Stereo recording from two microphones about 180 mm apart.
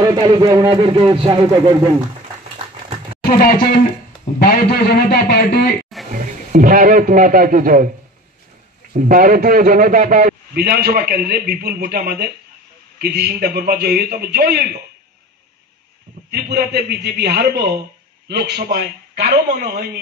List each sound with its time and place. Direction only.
0.0 s speech: 20° right (ahead or behind)
3.3 s a man's voice: 55° left (ahead or behind)
6.1 s speech: 50° right (ahead or behind)
8.9 s a man's voice: 45° right (ahead or behind); by 14.7 s 60° right (ahead or behind)
16.3 s a man's voice: 65° right (ahead or behind)